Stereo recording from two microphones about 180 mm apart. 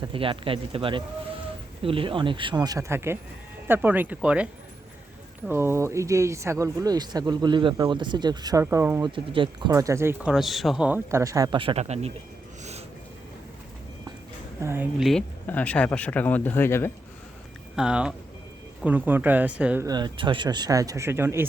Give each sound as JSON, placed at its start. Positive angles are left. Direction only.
{"t": 0.0, "sound": "speech", "side_deg": -30}
{"t": 5.5, "sound": "speech", "side_deg": -15}
{"t": 9.0, "sound": "speech", "side_deg": -30}
{"t": 14.6, "sound": "speech", "side_deg": -15}
{"t": 14.9, "sound": "speech", "side_deg": 0}
{"t": 17.7, "sound": "speech", "side_deg": -5}
{"t": 19.9, "sound": "speech", "side_deg": -25}